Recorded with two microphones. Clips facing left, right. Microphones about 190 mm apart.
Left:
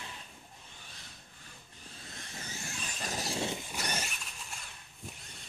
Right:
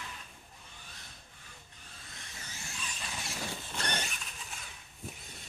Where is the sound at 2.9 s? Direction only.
40° left (ahead or behind).